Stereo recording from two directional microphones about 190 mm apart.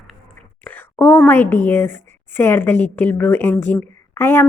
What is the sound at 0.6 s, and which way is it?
A woman's voice, 10° left (ahead or behind).